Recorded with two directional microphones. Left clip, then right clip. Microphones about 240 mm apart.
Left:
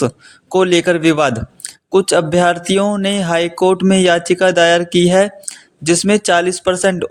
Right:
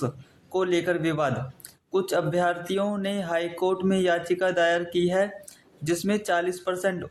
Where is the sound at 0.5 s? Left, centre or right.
Left.